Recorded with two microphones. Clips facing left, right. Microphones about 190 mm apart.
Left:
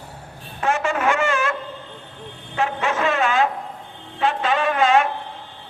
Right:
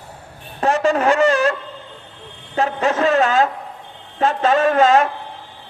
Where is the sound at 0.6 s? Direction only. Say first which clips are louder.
Right 5 dB; 35° right (ahead or behind).